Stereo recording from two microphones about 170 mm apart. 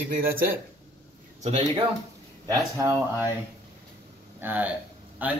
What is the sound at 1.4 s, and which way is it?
Speech, 40° right (ahead or behind).